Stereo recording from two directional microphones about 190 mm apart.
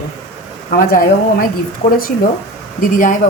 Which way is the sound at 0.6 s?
50° left (ahead or behind).